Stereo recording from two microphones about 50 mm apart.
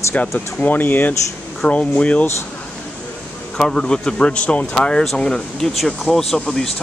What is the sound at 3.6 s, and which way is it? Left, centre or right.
Speech, centre.